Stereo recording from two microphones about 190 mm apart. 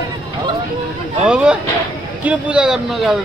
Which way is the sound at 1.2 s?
5° right (ahead or behind).